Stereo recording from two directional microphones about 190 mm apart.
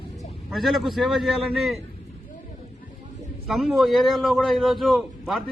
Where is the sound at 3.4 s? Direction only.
Centre (ahead or behind).